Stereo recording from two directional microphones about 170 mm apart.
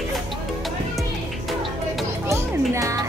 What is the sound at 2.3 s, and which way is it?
Music, 15° right (ahead or behind).